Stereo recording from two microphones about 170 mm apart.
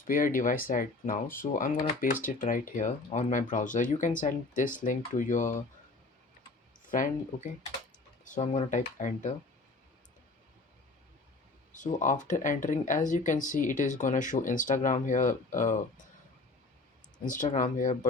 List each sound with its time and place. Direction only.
0.0 s speech: 55° left (ahead or behind)
6.8 s speech: 50° left (ahead or behind)
8.4 s speech: 35° left (ahead or behind)
11.7 s speech: 45° left (ahead or behind)
17.2 s speech: 50° left (ahead or behind)